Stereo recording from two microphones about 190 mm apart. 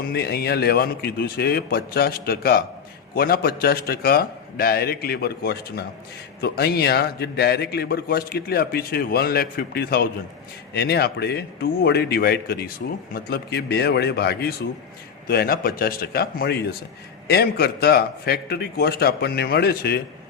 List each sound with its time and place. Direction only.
0.0 s a man's voice: 55° left (ahead or behind)